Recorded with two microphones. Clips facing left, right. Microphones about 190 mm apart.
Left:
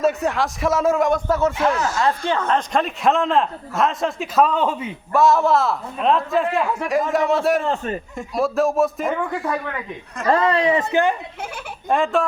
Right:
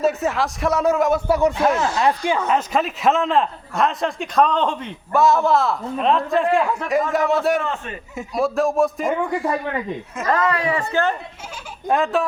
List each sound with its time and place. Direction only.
0.0 s speech: centre (ahead or behind)
7.6 s a man's voice: 35° left (ahead or behind)
8.1 s speech: centre (ahead or behind)
10.2 s speech: 30° left (ahead or behind)
11.9 s speech: centre (ahead or behind)